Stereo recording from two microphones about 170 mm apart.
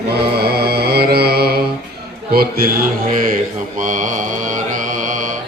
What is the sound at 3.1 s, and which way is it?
Mantra, 55° right (ahead or behind).